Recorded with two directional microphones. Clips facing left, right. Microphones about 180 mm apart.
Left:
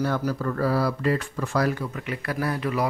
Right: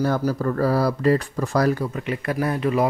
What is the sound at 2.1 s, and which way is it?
Speech, 25° right (ahead or behind).